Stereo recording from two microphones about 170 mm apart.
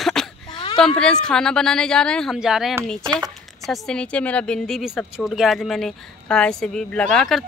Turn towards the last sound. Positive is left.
turn(degrees=0)  # may be behind; listen again after turning